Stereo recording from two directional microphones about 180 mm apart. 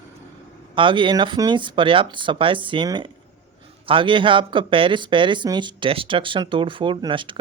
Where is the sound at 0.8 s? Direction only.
25° right (ahead or behind).